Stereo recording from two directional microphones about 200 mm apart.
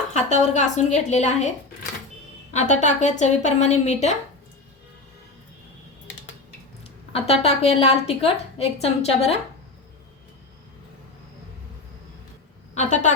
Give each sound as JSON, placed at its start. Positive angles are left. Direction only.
{"t": 0.1, "sound": "a woman's voice", "side_deg": 35}
{"t": 7.1, "sound": "a woman's voice", "side_deg": 30}
{"t": 12.7, "sound": "a woman's voice", "side_deg": 35}